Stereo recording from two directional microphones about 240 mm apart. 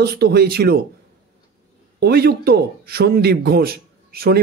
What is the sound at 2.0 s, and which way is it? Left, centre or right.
Speech, right.